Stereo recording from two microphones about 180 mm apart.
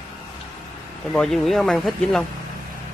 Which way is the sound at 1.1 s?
Centre (ahead or behind).